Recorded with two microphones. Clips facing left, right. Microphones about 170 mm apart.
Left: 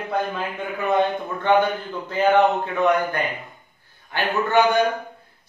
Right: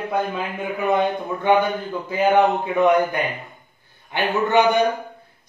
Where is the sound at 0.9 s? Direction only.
10° right (ahead or behind).